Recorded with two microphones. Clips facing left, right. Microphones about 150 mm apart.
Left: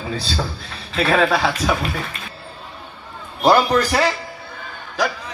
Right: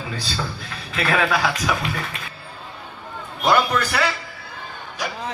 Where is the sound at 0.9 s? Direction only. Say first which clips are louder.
Left 4 dB; 30° left (ahead or behind).